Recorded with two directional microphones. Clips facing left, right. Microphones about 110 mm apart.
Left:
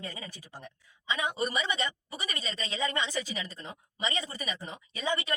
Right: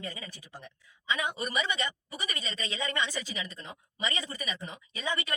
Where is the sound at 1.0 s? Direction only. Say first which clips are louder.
Left 1 dB; 30° left (ahead or behind).